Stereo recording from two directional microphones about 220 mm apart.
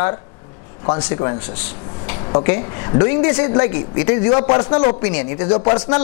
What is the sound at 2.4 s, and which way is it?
A man's voice, 15° left (ahead or behind).